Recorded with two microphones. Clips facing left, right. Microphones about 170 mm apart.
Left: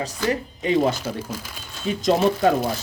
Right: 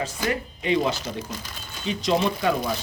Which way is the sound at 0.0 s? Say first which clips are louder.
Left 2 dB; 40° left (ahead or behind).